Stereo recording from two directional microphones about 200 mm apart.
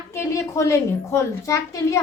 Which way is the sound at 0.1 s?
15° left (ahead or behind).